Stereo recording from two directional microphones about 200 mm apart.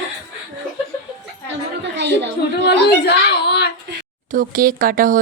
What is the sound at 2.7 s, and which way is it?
A child's voice, 55° left (ahead or behind).